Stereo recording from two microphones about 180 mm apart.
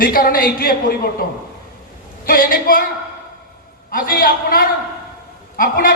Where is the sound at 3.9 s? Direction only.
50° left (ahead or behind).